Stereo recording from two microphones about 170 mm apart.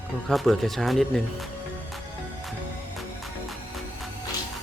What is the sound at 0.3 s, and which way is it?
Speech, centre (ahead or behind).